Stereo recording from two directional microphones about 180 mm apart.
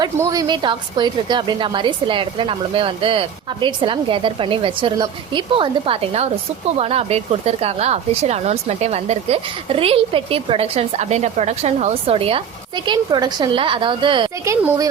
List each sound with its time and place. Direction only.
0.0 s a woman's voice: 20° right (ahead or behind)
14.4 s speech: 15° right (ahead or behind)